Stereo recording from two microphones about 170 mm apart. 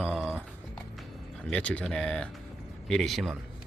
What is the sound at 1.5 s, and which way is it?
Speech, 5° left (ahead or behind).